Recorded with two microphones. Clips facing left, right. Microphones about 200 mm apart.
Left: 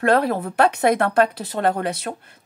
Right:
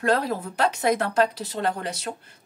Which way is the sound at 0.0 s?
60° left (ahead or behind).